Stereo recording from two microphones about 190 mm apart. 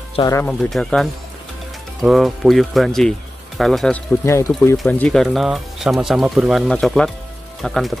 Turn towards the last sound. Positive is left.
turn(degrees=0)  # may be behind; listen again after turning